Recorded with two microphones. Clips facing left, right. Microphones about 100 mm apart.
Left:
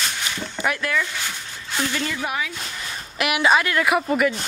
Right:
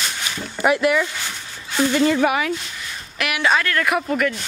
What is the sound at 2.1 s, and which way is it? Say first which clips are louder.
Speech: right 8 dB; 70° right (ahead or behind).